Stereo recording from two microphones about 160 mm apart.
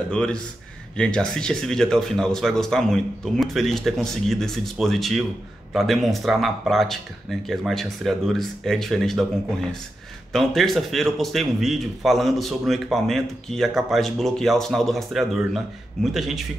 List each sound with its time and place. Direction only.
0.1 s a man's voice: 5° left (ahead or behind)